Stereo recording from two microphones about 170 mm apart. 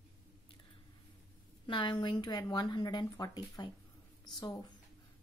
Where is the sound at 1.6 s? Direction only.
30° left (ahead or behind).